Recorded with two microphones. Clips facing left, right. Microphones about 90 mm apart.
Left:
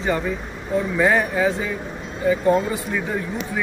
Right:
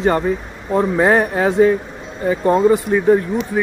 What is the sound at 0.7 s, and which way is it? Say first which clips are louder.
Speech: right 5 dB; 45° right (ahead or behind).